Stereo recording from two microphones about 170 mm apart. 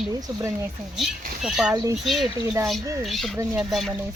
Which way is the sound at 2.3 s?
15° right (ahead or behind).